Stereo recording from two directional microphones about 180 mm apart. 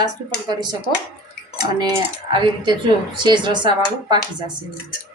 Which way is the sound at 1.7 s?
20° right (ahead or behind).